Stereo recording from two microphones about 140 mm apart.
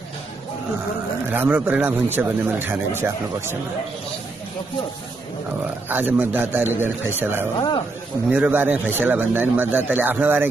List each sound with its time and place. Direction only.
1.3 s speech: 15° right (ahead or behind)
5.9 s speech: 10° right (ahead or behind)
7.5 s speech: 35° left (ahead or behind)
8.3 s speech: 10° right (ahead or behind)